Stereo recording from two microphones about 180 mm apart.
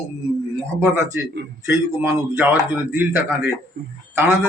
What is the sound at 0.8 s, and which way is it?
Speech, 15° right (ahead or behind).